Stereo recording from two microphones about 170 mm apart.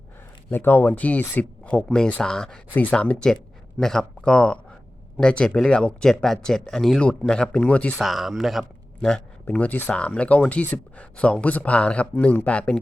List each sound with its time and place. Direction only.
0.5 s speech: 10° left (ahead or behind)